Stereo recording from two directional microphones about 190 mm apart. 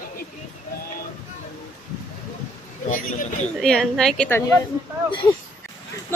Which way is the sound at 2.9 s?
40° left (ahead or behind).